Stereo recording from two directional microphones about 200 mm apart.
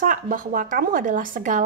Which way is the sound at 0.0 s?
40° right (ahead or behind).